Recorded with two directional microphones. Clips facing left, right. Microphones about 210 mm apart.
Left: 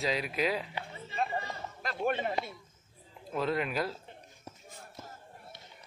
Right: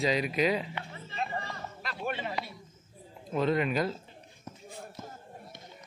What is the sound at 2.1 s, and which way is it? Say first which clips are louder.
Speech: left 3 dB; 45° left (ahead or behind).